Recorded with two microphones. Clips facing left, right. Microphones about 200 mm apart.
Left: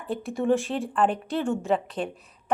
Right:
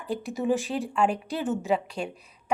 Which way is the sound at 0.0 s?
Centre (ahead or behind).